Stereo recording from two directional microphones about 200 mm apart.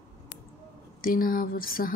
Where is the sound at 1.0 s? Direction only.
45° left (ahead or behind).